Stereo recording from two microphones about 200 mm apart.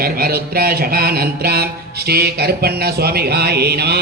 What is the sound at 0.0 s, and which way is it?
Mantra, 50° right (ahead or behind).